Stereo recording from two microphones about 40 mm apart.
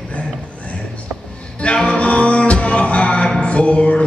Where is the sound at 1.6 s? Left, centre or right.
Left.